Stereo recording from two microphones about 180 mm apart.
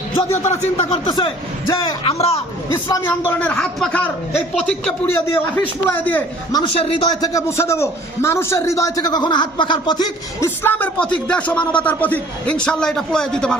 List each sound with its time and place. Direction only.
0.2 s speech: 35° left (ahead or behind)
1.0 s a man's voice: 25° left (ahead or behind)
2.7 s a man's voice: 15° left (ahead or behind)
6.5 s a man's voice: 30° left (ahead or behind)
7.2 s a man's voice: 15° left (ahead or behind)
10.6 s speech: 10° left (ahead or behind)